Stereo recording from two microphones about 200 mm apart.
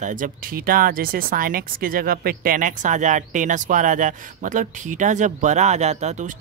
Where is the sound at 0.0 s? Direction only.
40° right (ahead or behind).